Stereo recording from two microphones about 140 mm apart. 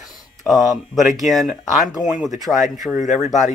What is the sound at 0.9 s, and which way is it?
Speech, 65° left (ahead or behind).